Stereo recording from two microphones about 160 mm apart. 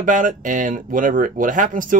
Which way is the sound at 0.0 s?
55° right (ahead or behind).